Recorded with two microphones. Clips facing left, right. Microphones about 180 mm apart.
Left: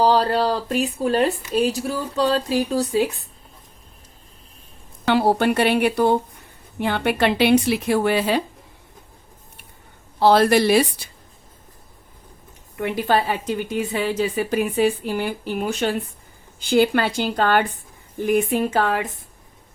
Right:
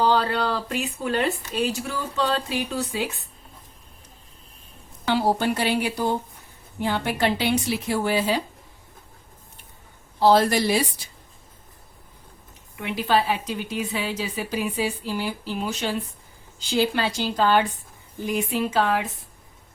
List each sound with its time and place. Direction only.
0.0 s speech: 35° left (ahead or behind)
5.0 s speech: 60° left (ahead or behind)
10.2 s speech: 65° left (ahead or behind)
12.7 s a woman's voice: 50° left (ahead or behind)